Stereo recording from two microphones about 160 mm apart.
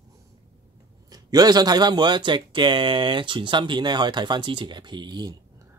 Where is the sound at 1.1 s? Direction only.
25° right (ahead or behind).